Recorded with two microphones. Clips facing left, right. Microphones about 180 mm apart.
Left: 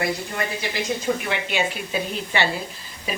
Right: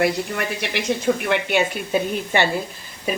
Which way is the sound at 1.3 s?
55° right (ahead or behind).